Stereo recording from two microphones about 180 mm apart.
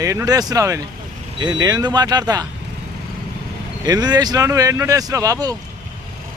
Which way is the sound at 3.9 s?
20° right (ahead or behind).